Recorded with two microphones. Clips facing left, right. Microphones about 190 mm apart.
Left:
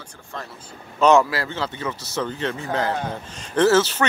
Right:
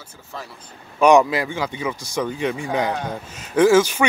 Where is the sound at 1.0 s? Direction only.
15° right (ahead or behind).